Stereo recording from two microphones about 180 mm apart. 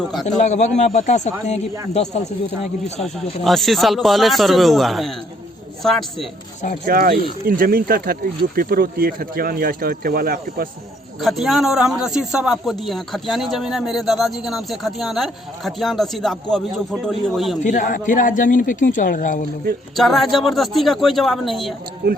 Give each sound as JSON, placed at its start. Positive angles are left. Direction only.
{"t": 0.3, "sound": "speech", "side_deg": 40}
{"t": 3.0, "sound": "a man's voice", "side_deg": 0}
{"t": 6.8, "sound": "speech", "side_deg": -55}
{"t": 11.2, "sound": "a man's voice", "side_deg": 0}
{"t": 17.6, "sound": "speech", "side_deg": 45}
{"t": 20.0, "sound": "a man's voice", "side_deg": 0}
{"t": 22.0, "sound": "speech", "side_deg": -65}